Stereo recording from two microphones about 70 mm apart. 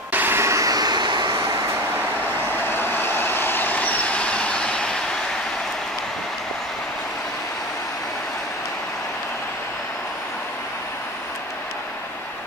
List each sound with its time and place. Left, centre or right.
0.1 s vehicle: right
0.4 s vehicle: right
2.7 s vehicle: left; by 4.8 s centre